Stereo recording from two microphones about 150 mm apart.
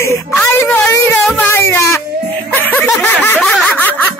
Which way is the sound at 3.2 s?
10° left (ahead or behind).